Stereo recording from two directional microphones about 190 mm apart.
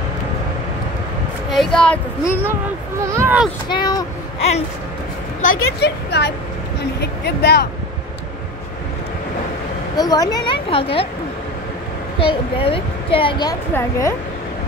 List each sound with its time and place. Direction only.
1.5 s speech: centre (ahead or behind)
3.0 s speech: 10° right (ahead or behind)
3.6 s a woman's voice: 20° left (ahead or behind)
5.4 s a woman's voice: 50° left (ahead or behind)
9.9 s a woman's voice: 20° left (ahead or behind)
12.2 s a woman's voice: 30° left (ahead or behind)